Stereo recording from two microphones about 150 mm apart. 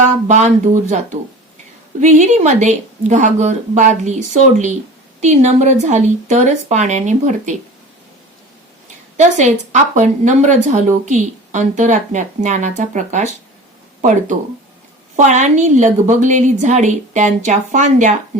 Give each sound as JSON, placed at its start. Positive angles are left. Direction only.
{"t": 0.0, "sound": "speech", "side_deg": -50}
{"t": 5.2, "sound": "speech", "side_deg": -50}
{"t": 9.1, "sound": "speech", "side_deg": -50}